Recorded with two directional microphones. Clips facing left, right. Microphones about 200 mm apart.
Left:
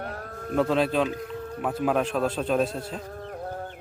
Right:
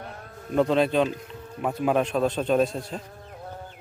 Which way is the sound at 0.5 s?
Centre (ahead or behind).